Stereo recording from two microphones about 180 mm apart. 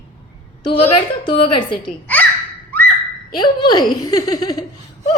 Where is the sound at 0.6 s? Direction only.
30° left (ahead or behind).